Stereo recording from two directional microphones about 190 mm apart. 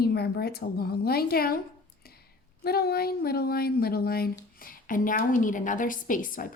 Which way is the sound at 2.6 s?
55° left (ahead or behind).